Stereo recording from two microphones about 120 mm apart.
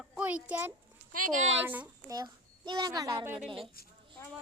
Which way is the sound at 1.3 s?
90° right.